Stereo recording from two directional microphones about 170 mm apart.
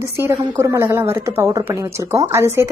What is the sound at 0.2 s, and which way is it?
Speech, 15° right (ahead or behind).